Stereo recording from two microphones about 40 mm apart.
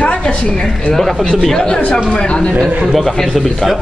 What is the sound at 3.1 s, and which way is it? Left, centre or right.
Speech, centre.